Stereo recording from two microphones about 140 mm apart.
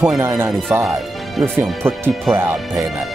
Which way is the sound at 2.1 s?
Centre (ahead or behind).